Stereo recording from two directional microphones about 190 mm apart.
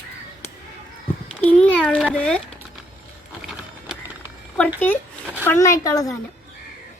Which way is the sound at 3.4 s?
5° right (ahead or behind).